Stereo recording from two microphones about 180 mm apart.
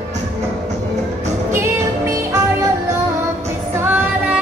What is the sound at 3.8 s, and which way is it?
Music, 10° right (ahead or behind).